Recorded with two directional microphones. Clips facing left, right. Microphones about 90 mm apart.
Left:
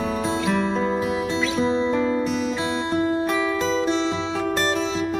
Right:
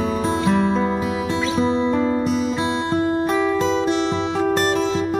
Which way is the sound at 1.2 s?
35° right (ahead or behind).